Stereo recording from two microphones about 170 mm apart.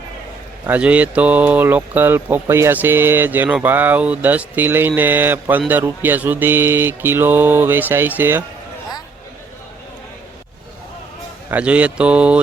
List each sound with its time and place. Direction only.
0.7 s speech: 10° right (ahead or behind)
11.5 s speech: 10° right (ahead or behind)